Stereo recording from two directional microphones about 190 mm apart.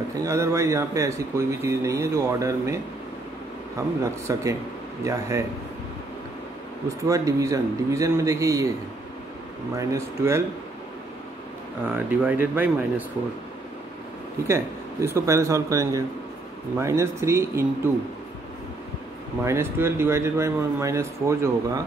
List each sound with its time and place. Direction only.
0.2 s speech: 15° right (ahead or behind)
4.0 s speech: 15° right (ahead or behind)
7.1 s speech: 15° right (ahead or behind)
9.8 s speech: 15° right (ahead or behind)
11.9 s speech: 10° right (ahead or behind)
14.5 s speech: 15° right (ahead or behind)
19.4 s speech: 15° right (ahead or behind)